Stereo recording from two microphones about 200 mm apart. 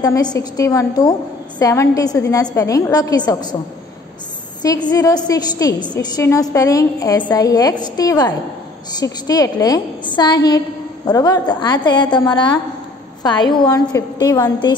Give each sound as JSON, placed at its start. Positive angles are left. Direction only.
{"t": 0.0, "sound": "a woman's voice", "side_deg": 20}
{"t": 4.6, "sound": "a woman's voice", "side_deg": 20}